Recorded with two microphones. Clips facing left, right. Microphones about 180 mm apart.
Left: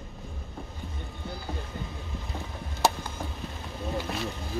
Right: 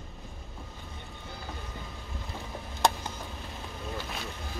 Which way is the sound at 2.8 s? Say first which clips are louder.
Left 1 dB; 5° left (ahead or behind).